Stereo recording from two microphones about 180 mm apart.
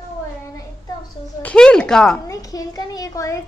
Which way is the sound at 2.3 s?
20° left (ahead or behind).